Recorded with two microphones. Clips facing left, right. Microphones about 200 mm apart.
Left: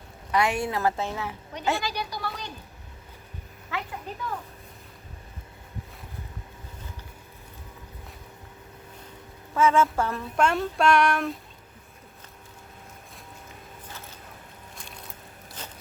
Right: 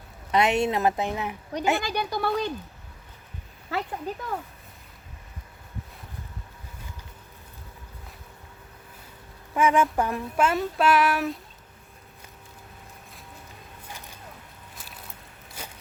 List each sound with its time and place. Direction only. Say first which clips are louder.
0.3 s a woman's voice: right 3 dB; 20° right (ahead or behind)
1.8 s speech: right 5 dB; 55° right (ahead or behind)
3.7 s speech: right 4 dB; 35° right (ahead or behind)
9.6 s speech: even; 15° right (ahead or behind)
14.8 s a sound: left 1 dB; 5° right (ahead or behind)